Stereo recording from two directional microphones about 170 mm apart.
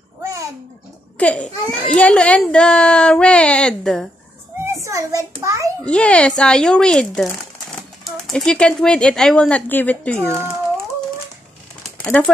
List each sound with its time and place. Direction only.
0.2 s a sound: 15° right (ahead or behind)
1.1 s a child's voice: 5° left (ahead or behind)
4.7 s hands: 20° right (ahead or behind)
5.4 s a child's voice: 20° right (ahead or behind)
5.9 s a child's voice: 5° left (ahead or behind)
12.0 s speech: centre (ahead or behind)